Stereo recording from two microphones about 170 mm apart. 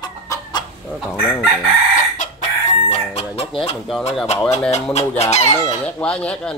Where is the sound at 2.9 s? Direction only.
35° left (ahead or behind).